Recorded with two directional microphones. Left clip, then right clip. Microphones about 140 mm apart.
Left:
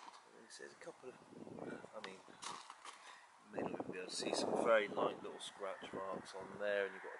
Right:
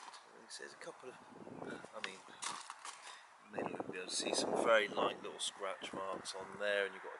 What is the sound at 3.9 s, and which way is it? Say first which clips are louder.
Speech: right 3 dB; 5° left (ahead or behind).